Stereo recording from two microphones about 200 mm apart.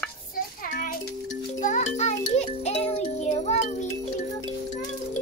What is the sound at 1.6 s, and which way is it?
Music, 35° left (ahead or behind).